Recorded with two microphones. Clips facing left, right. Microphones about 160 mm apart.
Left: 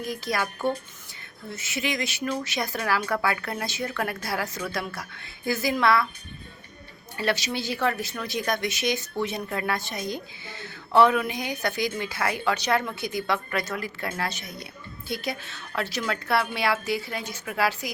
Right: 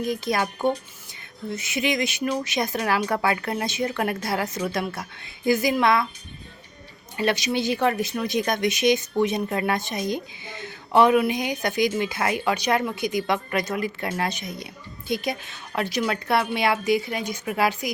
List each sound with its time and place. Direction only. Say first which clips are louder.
0.0 s a woman's voice: right 4 dB; 20° right (ahead or behind)
7.2 s a woman's voice: right 4 dB; 15° right (ahead or behind)